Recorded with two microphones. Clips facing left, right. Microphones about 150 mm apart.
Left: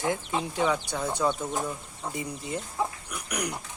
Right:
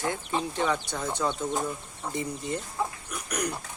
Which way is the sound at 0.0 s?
15° left (ahead or behind).